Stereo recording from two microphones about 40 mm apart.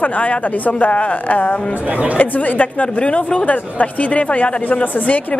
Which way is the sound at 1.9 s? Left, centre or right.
Right.